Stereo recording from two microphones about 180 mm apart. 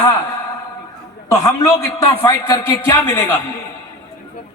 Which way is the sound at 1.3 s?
20° left (ahead or behind).